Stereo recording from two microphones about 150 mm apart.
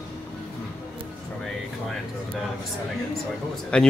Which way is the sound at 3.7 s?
5° left (ahead or behind).